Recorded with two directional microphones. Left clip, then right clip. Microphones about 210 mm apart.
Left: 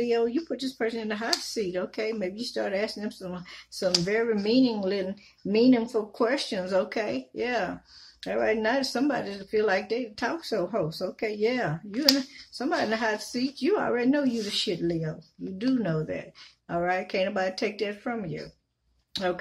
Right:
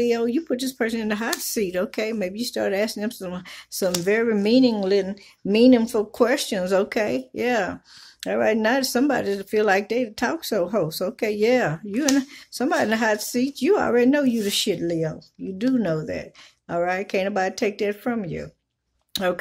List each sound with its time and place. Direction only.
0.0 s speech: 45° right (ahead or behind)